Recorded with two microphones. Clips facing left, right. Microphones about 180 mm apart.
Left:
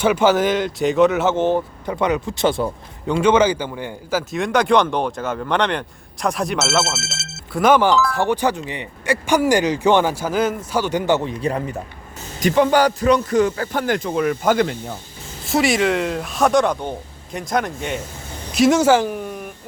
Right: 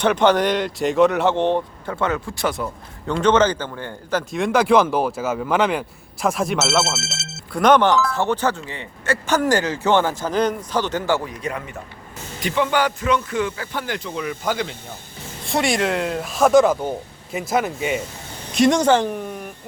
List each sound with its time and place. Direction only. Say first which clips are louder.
0.0 s speech: left 1 dB; 5° left (ahead or behind)
1.9 s speech: left 3 dB; 15° left (ahead or behind)
3.1 s speech: left 2 dB; 10° left (ahead or behind)
4.3 s speech: right 1 dB; centre (ahead or behind)
7.0 s speech: even; 50° left (ahead or behind)
7.5 s speech: even; 5° left (ahead or behind); by 14.8 s 50° left (ahead or behind)
15.4 s speech: left 3 dB; centre (ahead or behind)